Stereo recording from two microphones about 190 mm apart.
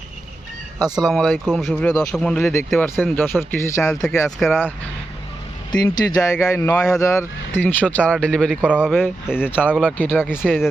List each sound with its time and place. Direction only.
0.8 s speech: 20° right (ahead or behind)
1.0 s speech: centre (ahead or behind)
4.4 s speech: centre (ahead or behind)
5.8 s speech: 15° left (ahead or behind); by 9.0 s 5° right (ahead or behind)
9.4 s speech: 10° left (ahead or behind)